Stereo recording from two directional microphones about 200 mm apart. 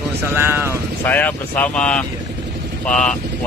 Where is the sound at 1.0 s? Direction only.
10° left (ahead or behind).